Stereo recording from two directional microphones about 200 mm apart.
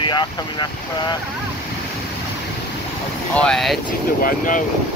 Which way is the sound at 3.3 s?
5° left (ahead or behind).